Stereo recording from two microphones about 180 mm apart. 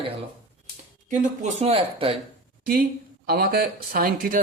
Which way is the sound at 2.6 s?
50° right (ahead or behind).